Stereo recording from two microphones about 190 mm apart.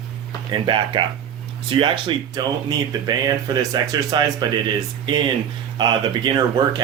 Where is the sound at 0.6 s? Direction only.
25° right (ahead or behind).